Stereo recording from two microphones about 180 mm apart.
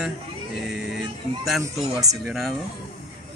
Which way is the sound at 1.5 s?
Centre (ahead or behind).